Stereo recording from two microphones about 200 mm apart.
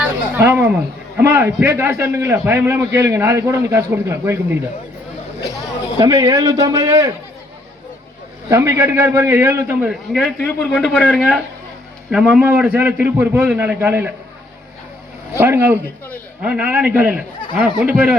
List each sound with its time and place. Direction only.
0.0 s a man's voice: 10° right (ahead or behind)
6.0 s a man's voice: 15° right (ahead or behind)
8.4 s a man's voice: 15° right (ahead or behind)
15.4 s a man's voice: 10° right (ahead or behind)